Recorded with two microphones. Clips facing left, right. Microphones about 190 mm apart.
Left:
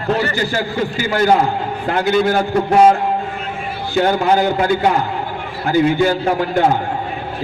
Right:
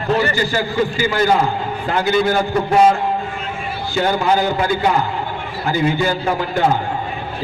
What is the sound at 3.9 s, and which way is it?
A man's voice, 55° left (ahead or behind).